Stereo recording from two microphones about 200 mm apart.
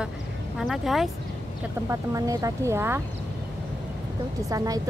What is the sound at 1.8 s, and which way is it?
Speech, 15° right (ahead or behind).